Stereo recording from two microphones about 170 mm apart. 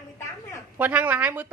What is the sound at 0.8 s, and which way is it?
Speech, 10° right (ahead or behind).